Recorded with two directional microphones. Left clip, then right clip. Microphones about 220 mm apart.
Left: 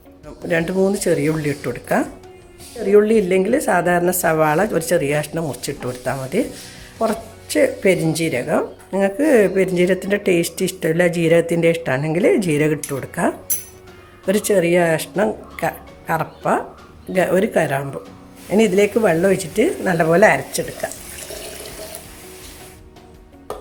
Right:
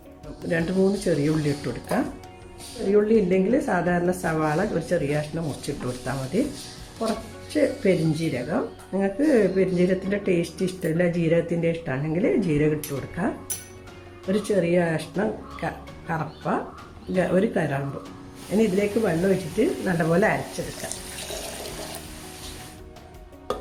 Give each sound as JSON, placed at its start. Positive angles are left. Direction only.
{"t": 1.0, "sound": "speech", "side_deg": 35}
{"t": 7.5, "sound": "speech", "side_deg": 35}